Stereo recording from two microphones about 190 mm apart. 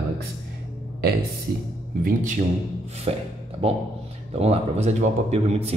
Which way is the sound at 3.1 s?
35° right (ahead or behind).